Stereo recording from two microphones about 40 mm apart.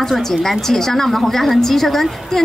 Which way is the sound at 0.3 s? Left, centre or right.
Centre.